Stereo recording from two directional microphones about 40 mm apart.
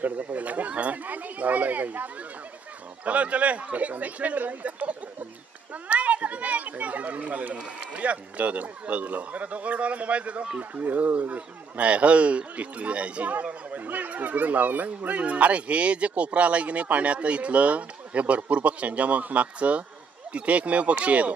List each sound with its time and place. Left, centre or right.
0.0 s speech: right
3.1 s speech: right